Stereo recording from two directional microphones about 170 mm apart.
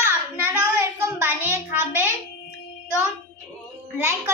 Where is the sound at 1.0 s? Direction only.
10° right (ahead or behind).